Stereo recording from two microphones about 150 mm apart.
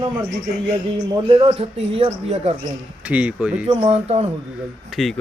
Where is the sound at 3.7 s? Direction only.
45° right (ahead or behind).